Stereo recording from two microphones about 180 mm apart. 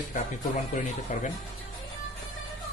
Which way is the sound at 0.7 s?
45° left (ahead or behind).